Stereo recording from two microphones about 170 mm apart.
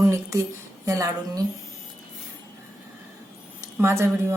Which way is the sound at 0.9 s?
20° right (ahead or behind).